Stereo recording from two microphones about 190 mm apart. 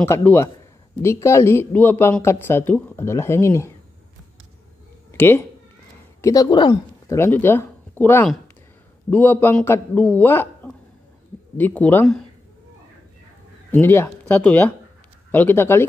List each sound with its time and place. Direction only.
0.0 s speech: 10° left (ahead or behind)
5.1 s speech: 10° left (ahead or behind)
13.7 s speech: 10° left (ahead or behind)